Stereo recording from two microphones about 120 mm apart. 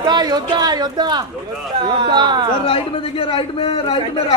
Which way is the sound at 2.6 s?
50° left (ahead or behind).